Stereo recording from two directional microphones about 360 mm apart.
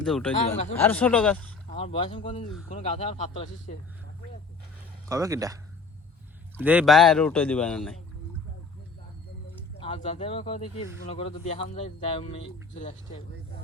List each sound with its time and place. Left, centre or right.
0.0 s speech: centre
0.3 s a man's voice: centre
0.8 s speech: centre
1.7 s a man's voice: centre
5.0 s speech: centre
6.6 s speech: centre
9.8 s a man's voice: centre